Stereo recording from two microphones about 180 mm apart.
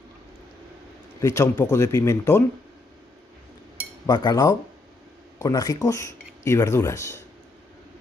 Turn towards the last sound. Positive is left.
turn(degrees=15)  # may be behind; listen again after turning